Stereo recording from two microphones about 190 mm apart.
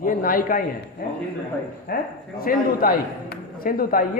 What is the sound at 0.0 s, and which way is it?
Speech, 45° left (ahead or behind).